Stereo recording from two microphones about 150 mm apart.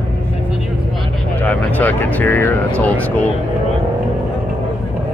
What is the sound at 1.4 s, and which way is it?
Speech, 10° left (ahead or behind).